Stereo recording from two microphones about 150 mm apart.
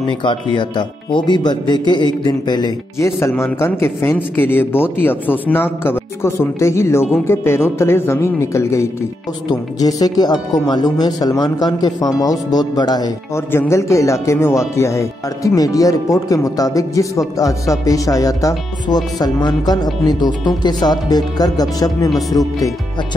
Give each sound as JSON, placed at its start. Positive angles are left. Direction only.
{"t": 0.6, "sound": "speech", "side_deg": 30}